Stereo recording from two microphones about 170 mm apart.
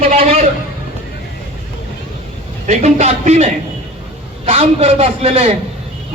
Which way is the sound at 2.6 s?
45° right (ahead or behind).